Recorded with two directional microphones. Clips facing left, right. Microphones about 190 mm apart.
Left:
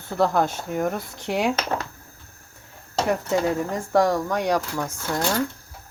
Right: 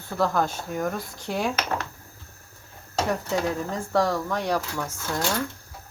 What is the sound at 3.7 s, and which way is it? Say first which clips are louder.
Speech: left 3 dB; 20° left (ahead or behind).